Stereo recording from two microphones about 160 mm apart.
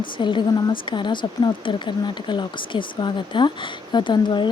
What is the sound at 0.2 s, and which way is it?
A woman's voice, 30° left (ahead or behind).